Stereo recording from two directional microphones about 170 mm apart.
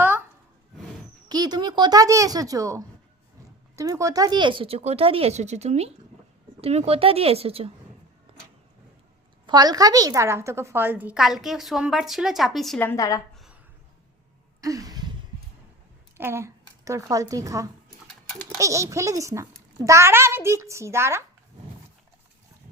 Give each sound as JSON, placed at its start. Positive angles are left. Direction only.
{"t": 1.3, "sound": "speech", "side_deg": -25}
{"t": 8.3, "sound": "vehicle", "side_deg": -30}
{"t": 9.5, "sound": "a woman's voice", "side_deg": -25}
{"t": 14.6, "sound": "a sound", "side_deg": -20}
{"t": 16.1, "sound": "a child's voice", "side_deg": -15}